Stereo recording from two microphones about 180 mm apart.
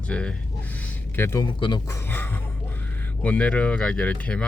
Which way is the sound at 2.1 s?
10° left (ahead or behind).